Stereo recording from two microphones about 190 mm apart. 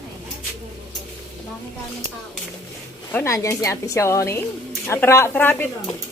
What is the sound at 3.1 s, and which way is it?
A woman's voice, 15° left (ahead or behind).